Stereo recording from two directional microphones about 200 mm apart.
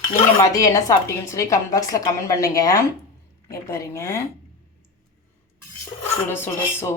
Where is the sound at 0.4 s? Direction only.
15° left (ahead or behind).